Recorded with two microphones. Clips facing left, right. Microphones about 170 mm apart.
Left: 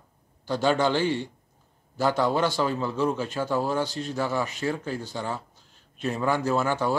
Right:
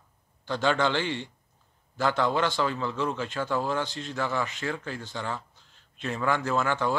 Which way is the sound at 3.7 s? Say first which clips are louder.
Left 3 dB; 45° left (ahead or behind).